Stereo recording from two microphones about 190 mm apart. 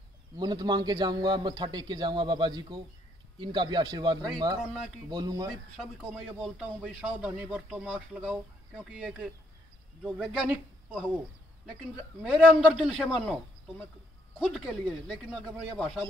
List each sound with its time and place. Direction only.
0.4 s a man's voice: 20° right (ahead or behind)
5.5 s speech: 5° right (ahead or behind)
12.2 s speech: 5° right (ahead or behind)